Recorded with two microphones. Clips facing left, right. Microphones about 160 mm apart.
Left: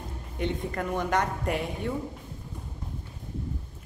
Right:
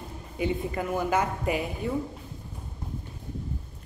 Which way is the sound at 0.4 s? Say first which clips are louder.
Right 2 dB; 5° right (ahead or behind).